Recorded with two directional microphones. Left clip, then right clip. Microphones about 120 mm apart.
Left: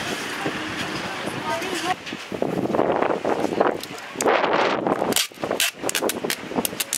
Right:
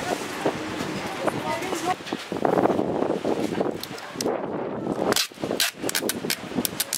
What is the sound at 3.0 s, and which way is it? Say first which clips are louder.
Wind noise: left 3 dB; 45° left (ahead or behind).